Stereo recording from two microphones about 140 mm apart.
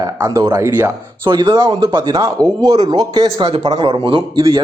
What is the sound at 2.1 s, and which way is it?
Speech, 25° right (ahead or behind).